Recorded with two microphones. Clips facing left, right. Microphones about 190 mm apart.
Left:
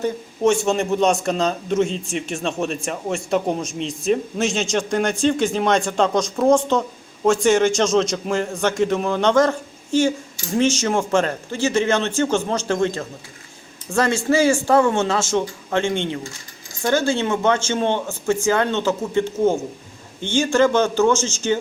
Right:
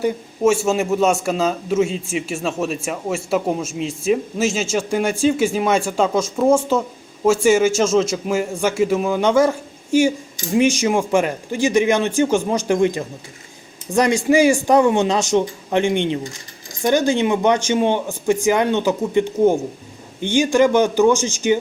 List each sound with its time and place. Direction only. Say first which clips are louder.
0.0 s a man's voice: right 2 dB; 5° right (ahead or behind)